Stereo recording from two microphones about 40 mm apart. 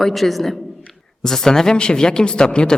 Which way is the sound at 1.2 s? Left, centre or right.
Centre.